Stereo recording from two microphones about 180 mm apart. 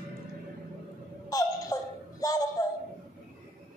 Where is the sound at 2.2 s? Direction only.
20° left (ahead or behind).